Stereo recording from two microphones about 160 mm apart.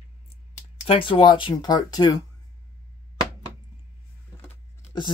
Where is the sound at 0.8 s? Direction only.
35° left (ahead or behind).